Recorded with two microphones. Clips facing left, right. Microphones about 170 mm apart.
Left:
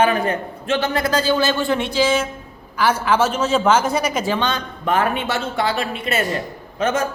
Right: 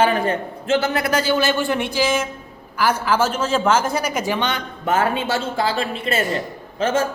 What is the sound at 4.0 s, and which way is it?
A man's voice, 10° right (ahead or behind).